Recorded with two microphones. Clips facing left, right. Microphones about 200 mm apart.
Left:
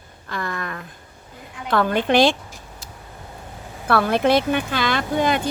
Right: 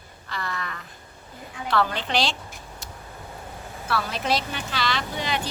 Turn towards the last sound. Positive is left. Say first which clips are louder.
# left 8 dB
turn(degrees=50)  # may be behind; listen again after turning